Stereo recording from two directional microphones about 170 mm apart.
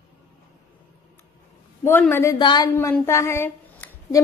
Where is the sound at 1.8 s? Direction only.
15° left (ahead or behind).